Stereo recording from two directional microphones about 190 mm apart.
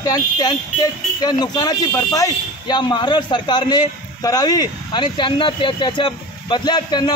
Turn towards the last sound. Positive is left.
turn(degrees=25)  # may be behind; listen again after turning